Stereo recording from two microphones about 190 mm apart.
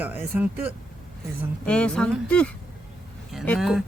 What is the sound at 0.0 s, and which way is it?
Speech, 10° right (ahead or behind).